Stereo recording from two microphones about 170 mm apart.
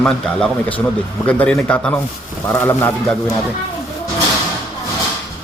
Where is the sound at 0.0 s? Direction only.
5° left (ahead or behind).